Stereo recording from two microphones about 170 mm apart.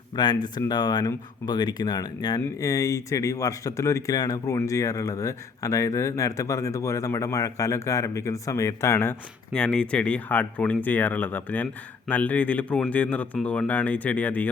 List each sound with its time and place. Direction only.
0.2 s speech: 25° left (ahead or behind); by 14.5 s 10° left (ahead or behind)